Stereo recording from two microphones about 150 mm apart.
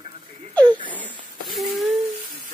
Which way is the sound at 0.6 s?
30° right (ahead or behind).